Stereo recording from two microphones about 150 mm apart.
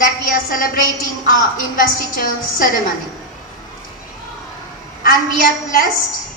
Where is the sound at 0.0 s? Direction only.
65° left (ahead or behind).